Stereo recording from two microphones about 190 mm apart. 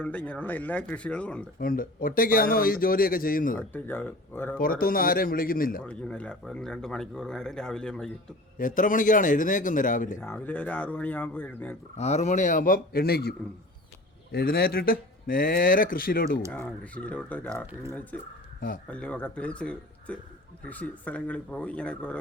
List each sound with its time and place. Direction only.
0.0 s speech: 5° left (ahead or behind)
1.5 s speech: 50° left (ahead or behind)
3.7 s speech: 10° left (ahead or behind)
4.6 s speech: 50° left (ahead or behind)
5.8 s speech: 5° left (ahead or behind)
8.5 s speech: 45° left (ahead or behind)
10.2 s speech: 10° left (ahead or behind)
11.9 s speech: 35° left (ahead or behind); by 13.3 s 55° left (ahead or behind)
14.3 s speech: 55° left (ahead or behind)
16.5 s speech: 5° left (ahead or behind)